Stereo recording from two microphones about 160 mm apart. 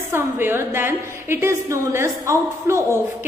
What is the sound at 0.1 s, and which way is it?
A woman's voice, 15° right (ahead or behind).